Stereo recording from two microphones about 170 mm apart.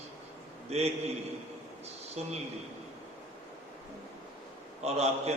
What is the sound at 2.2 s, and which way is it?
Speech, 40° right (ahead or behind).